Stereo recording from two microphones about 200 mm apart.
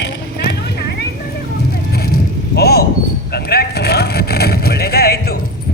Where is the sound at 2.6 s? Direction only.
50° left (ahead or behind).